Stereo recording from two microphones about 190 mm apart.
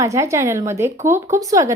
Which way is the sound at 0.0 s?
15° right (ahead or behind).